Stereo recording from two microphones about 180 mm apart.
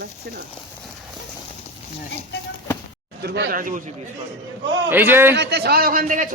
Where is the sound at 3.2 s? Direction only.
65° right (ahead or behind).